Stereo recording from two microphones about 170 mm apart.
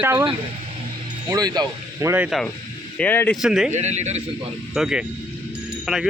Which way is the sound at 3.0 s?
10° left (ahead or behind).